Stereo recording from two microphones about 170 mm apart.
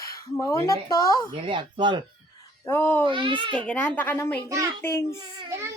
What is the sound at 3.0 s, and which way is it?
Speech, 30° right (ahead or behind).